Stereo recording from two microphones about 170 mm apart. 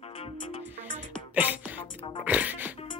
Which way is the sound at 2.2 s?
10° right (ahead or behind).